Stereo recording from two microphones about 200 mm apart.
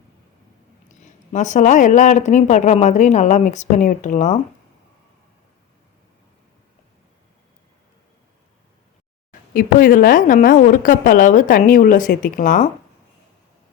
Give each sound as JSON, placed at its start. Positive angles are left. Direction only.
{"t": 0.9, "sound": "speech", "side_deg": 35}
{"t": 9.5, "sound": "a woman's voice", "side_deg": 45}